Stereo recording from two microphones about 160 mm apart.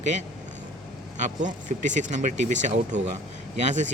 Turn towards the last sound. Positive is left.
turn(degrees=-50)  # may be behind; listen again after turning